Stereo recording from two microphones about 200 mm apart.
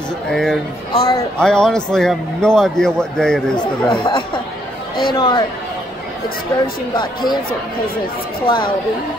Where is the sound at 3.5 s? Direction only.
25° left (ahead or behind).